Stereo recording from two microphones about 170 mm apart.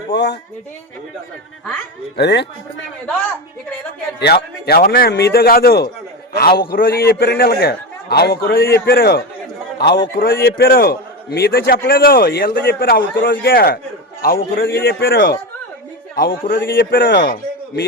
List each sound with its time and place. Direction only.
0.1 s a man's voice: 85° left
2.1 s speech: 85° left
4.2 s a man's voice: 70° left (ahead or behind)
9.7 s a man's voice: 80° left
10.6 s a man's voice: 60° left (ahead or behind)
16.1 s a man's voice: 60° left (ahead or behind); by 17.3 s 75° left (ahead or behind)